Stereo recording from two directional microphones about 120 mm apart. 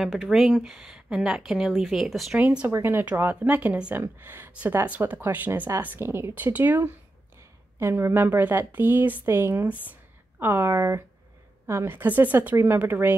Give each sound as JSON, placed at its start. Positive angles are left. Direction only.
{"t": 0.0, "sound": "speech", "side_deg": 0}
{"t": 2.3, "sound": "a woman's voice", "side_deg": -15}